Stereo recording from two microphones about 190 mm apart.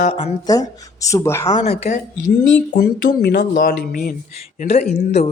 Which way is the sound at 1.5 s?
35° left (ahead or behind).